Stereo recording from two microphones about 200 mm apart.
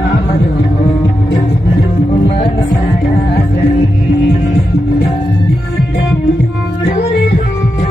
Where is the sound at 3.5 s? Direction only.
35° left (ahead or behind).